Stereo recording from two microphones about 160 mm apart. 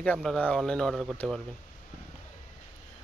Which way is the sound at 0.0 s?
5° left (ahead or behind).